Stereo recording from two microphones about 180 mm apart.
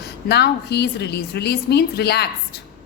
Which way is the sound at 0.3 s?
65° left (ahead or behind).